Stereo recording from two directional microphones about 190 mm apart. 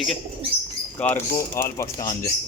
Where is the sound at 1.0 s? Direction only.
5° left (ahead or behind).